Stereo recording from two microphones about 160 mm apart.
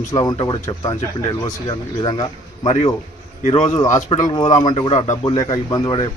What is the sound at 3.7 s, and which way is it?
Speech, 20° left (ahead or behind).